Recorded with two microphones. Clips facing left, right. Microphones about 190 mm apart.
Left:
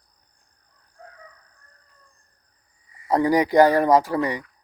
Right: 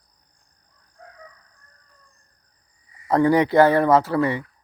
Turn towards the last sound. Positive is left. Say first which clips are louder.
# right 2 dB
turn(degrees=15)  # may be behind; listen again after turning